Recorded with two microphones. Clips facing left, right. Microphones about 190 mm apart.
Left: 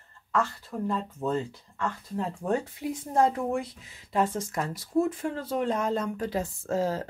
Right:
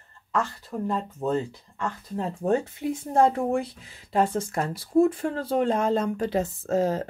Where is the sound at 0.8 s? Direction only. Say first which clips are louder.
Right 2 dB; 20° right (ahead or behind).